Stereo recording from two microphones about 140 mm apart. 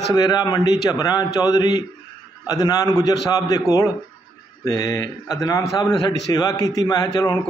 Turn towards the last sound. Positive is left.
turn(degrees=30)  # may be behind; listen again after turning